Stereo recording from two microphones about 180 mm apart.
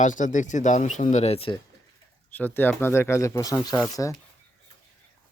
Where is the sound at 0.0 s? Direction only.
45° left (ahead or behind).